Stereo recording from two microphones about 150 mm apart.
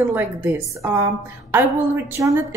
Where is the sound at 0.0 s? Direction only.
15° right (ahead or behind).